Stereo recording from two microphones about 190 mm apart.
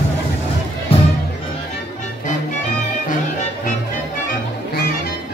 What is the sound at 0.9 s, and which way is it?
Music, 30° left (ahead or behind).